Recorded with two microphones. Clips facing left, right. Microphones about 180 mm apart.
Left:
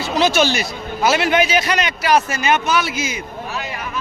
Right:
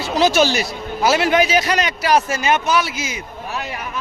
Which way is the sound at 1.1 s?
35° right (ahead or behind).